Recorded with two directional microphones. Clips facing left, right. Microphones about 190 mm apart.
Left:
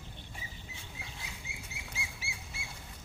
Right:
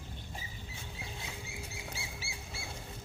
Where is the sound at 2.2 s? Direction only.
30° right (ahead or behind).